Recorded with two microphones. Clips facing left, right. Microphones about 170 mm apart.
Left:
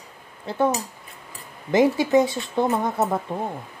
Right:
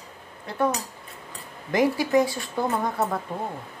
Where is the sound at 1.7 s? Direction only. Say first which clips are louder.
Left 3 dB; 25° left (ahead or behind).